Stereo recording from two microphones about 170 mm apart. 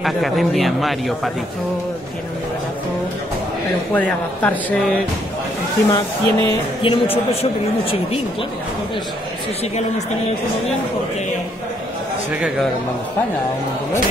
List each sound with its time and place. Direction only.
0.0 s a man's voice: centre (ahead or behind)
3.9 s speech: 10° left (ahead or behind)
5.9 s speech: 20° left (ahead or behind)
6.8 s speech: 30° left (ahead or behind)